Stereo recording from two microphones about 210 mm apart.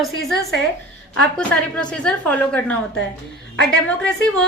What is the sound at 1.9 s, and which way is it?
A woman's voice, 5° left (ahead or behind).